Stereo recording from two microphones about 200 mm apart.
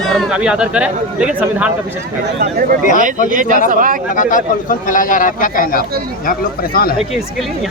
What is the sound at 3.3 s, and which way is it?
Speech, 40° right (ahead or behind).